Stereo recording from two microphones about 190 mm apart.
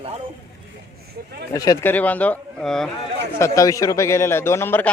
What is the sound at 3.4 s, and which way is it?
Speech, 15° left (ahead or behind).